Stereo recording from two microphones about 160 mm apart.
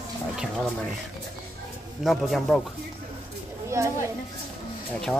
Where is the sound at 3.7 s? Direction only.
15° right (ahead or behind).